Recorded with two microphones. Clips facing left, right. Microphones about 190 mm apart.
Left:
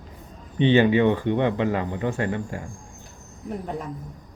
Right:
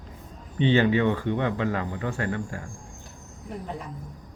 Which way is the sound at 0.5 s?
20° left (ahead or behind).